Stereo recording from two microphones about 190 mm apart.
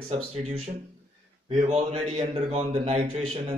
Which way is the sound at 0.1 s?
35° right (ahead or behind).